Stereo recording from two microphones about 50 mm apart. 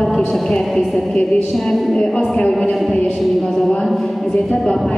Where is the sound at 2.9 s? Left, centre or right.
Left.